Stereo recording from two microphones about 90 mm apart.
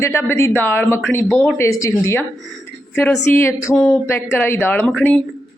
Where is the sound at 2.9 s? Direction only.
20° left (ahead or behind).